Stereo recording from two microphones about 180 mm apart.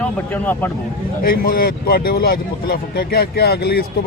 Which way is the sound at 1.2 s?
55° left (ahead or behind).